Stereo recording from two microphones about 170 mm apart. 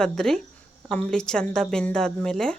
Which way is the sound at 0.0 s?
5° left (ahead or behind).